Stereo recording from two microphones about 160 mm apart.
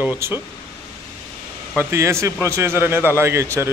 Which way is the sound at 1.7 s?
15° right (ahead or behind).